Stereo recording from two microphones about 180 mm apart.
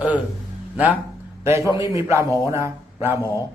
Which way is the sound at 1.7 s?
15° right (ahead or behind).